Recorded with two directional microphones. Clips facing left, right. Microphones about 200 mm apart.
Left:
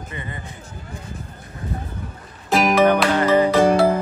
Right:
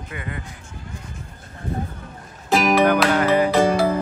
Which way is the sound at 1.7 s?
60° right (ahead or behind).